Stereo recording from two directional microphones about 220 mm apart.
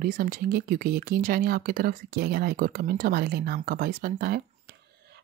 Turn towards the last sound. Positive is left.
turn(degrees=-40)  # may be behind; listen again after turning